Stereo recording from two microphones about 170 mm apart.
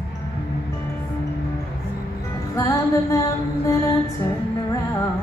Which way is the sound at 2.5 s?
20° left (ahead or behind).